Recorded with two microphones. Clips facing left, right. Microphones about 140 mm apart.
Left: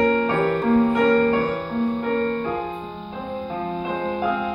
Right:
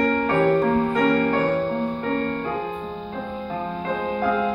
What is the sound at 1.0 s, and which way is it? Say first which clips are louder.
Music: left 2 dB; 30° left (ahead or behind).